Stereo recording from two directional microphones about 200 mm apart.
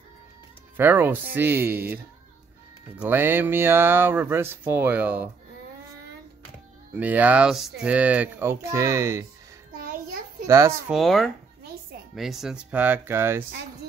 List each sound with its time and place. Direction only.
0.7 s speech: 10° right (ahead or behind)
3.0 s speech: 10° right (ahead or behind)
6.9 s speech: 10° right (ahead or behind)
9.8 s a sound: 45° right (ahead or behind)
10.4 s speech: 15° right (ahead or behind)
10.9 s speech: centre (ahead or behind)